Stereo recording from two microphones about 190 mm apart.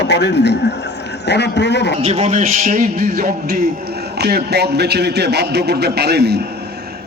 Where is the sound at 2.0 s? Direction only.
35° right (ahead or behind).